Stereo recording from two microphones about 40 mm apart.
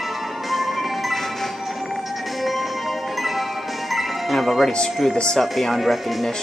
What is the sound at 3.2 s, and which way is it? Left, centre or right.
Music, centre.